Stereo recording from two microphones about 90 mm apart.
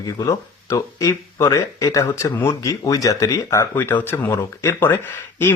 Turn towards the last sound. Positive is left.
turn(degrees=25)  # may be behind; listen again after turning